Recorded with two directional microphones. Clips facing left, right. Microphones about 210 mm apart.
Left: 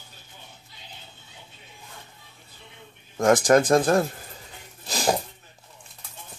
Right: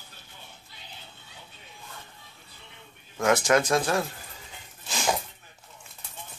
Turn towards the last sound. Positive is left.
turn(degrees=35)  # may be behind; listen again after turning